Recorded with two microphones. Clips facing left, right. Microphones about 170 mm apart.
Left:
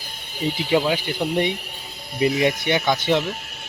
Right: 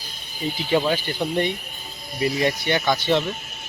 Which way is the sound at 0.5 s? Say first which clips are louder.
Even; 15° left (ahead or behind).